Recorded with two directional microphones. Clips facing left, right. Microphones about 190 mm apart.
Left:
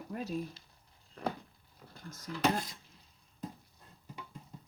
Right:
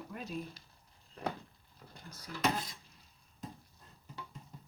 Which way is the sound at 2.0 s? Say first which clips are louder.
Left 6 dB; 45° left (ahead or behind).